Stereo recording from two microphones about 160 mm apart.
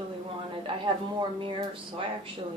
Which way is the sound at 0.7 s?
35° right (ahead or behind).